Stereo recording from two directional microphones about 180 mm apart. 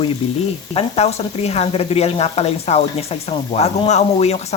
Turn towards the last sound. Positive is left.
turn(degrees=35)  # may be behind; listen again after turning